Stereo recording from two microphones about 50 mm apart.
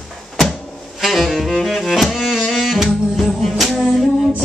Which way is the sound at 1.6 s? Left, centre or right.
Centre.